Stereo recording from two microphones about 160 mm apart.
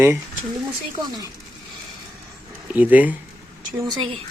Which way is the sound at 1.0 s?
25° right (ahead or behind).